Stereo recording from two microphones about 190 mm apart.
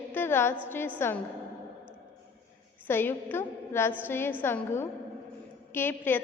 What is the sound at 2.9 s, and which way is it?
A woman's voice, 10° left (ahead or behind).